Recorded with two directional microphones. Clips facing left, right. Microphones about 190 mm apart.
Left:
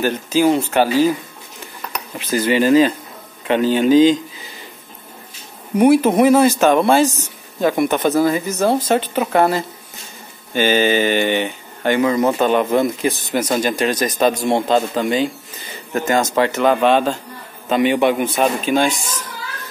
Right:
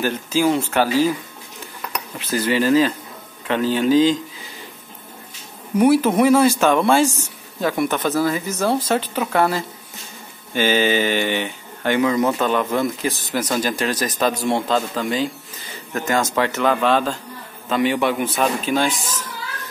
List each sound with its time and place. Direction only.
0.0 s a man's voice: 15° left (ahead or behind)
1.9 s cutlery: 15° left (ahead or behind)
3.4 s a man's voice: 20° left (ahead or behind)
5.8 s a man's voice: 15° left (ahead or behind)
10.7 s mantra: 50° left (ahead or behind)
11.1 s a man's voice: 15° left (ahead or behind)